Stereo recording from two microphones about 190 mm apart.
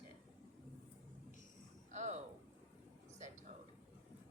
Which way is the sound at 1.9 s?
35° right (ahead or behind).